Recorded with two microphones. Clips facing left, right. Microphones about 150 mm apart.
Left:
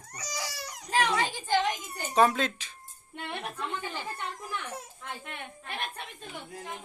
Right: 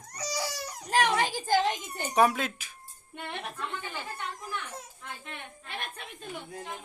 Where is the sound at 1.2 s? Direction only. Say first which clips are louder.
Right 2 dB; 40° right (ahead or behind).